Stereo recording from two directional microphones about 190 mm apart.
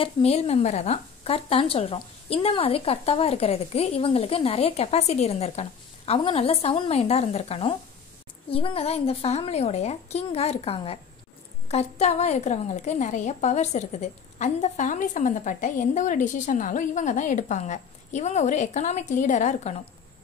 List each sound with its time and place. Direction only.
0.0 s a woman's voice: 35° left (ahead or behind)